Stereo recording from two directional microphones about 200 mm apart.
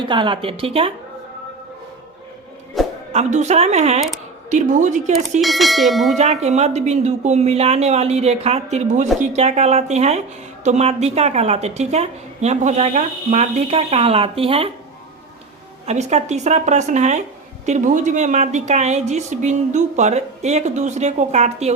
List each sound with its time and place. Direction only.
0.1 s a woman's voice: 25° right (ahead or behind)
2.8 s music: centre (ahead or behind)
3.1 s a woman's voice: 35° right (ahead or behind)
5.4 s speech: centre (ahead or behind)
6.1 s a woman's voice: 35° right (ahead or behind)
15.9 s a woman's voice: 35° right (ahead or behind)